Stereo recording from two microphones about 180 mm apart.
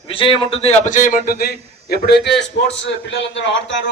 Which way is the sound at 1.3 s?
60° left (ahead or behind).